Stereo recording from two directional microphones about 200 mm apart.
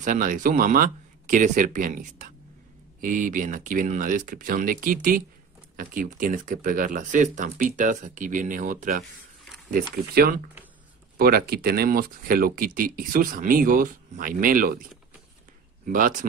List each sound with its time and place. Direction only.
0.0 s speech: 40° right (ahead or behind)
15.9 s speech: 40° right (ahead or behind)